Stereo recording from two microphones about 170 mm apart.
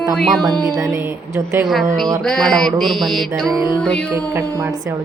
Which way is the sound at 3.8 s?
5° left (ahead or behind).